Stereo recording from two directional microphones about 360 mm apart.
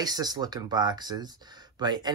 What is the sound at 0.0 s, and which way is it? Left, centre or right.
Speech, centre.